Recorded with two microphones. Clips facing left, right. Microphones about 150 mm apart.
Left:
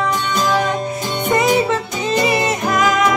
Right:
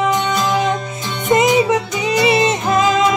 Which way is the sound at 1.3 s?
15° right (ahead or behind).